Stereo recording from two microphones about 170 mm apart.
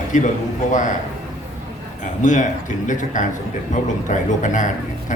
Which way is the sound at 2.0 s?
45° left (ahead or behind).